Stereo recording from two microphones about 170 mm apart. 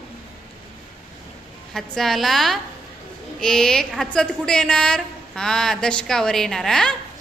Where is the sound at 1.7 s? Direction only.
Centre (ahead or behind).